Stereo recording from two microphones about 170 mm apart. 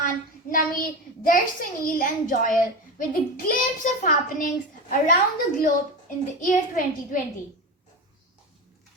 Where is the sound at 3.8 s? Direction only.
50° left (ahead or behind).